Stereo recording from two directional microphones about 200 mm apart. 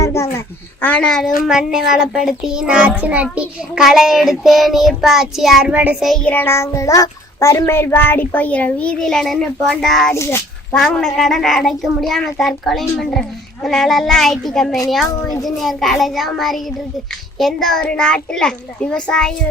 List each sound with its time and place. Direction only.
0.0 s babbling: 15° left (ahead or behind)
0.3 s a sound: 10° left (ahead or behind)
1.5 s a child's voice: 5° right (ahead or behind)
10.2 s speech: 15° left (ahead or behind)
10.8 s a child's voice: centre (ahead or behind)